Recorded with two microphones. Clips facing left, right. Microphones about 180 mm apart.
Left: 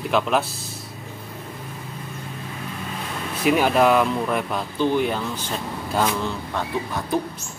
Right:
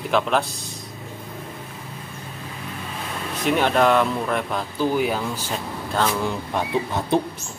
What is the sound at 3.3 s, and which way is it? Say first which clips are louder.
A man's voice: left 1 dB; 5° left (ahead or behind).